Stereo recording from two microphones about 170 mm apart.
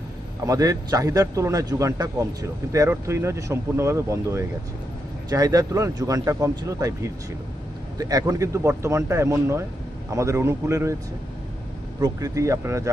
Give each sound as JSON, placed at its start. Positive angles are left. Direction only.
{"t": 0.5, "sound": "speech", "side_deg": -20}
{"t": 12.0, "sound": "speech", "side_deg": -20}